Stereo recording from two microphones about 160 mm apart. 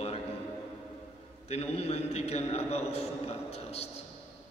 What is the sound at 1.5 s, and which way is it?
A man's voice, 40° left (ahead or behind).